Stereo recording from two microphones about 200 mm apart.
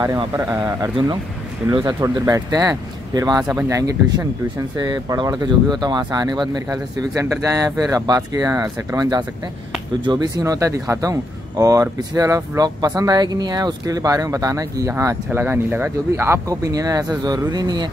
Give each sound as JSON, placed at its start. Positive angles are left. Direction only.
{"t": 0.0, "sound": "speech", "side_deg": -15}